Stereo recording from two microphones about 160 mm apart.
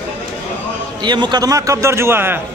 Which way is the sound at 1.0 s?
30° right (ahead or behind).